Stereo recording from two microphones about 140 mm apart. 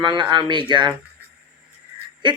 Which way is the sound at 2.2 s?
35° right (ahead or behind).